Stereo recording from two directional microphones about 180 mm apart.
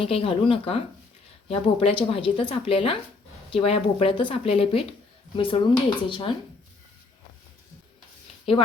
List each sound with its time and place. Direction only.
0.0 s speech: 35° left (ahead or behind)